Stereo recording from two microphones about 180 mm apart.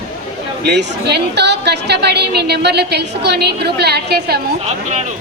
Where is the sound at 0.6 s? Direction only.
70° right (ahead or behind).